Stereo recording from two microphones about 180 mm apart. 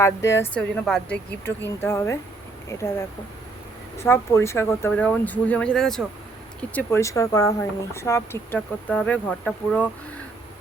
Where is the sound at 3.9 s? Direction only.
15° left (ahead or behind).